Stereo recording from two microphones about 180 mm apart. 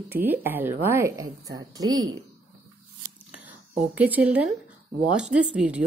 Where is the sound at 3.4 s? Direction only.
10° right (ahead or behind).